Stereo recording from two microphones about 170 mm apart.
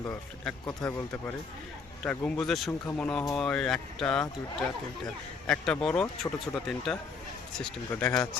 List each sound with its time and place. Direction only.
0.0 s speech: 10° left (ahead or behind)
0.6 s speech: 25° left (ahead or behind)
2.0 s speech: 5° left (ahead or behind)